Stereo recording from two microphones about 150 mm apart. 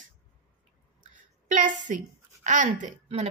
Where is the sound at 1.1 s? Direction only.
60° right (ahead or behind).